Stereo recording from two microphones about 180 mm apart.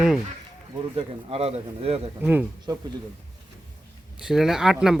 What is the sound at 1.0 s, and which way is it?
Speech, 35° right (ahead or behind).